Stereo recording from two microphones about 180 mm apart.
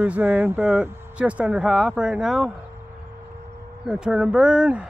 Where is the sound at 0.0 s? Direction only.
10° right (ahead or behind).